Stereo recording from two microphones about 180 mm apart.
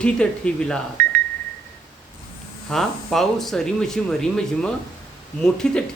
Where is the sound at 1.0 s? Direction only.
55° right (ahead or behind).